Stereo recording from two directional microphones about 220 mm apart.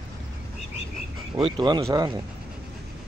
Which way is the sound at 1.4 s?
25° right (ahead or behind).